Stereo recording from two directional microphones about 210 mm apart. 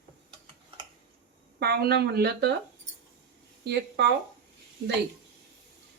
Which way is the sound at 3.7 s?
55° right (ahead or behind).